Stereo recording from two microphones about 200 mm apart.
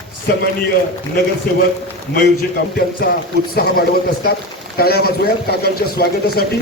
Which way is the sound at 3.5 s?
50° left (ahead or behind).